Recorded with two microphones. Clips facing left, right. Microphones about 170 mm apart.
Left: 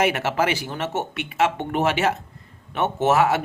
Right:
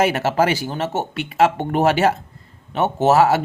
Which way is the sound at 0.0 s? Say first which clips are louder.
Right 4 dB; 35° right (ahead or behind).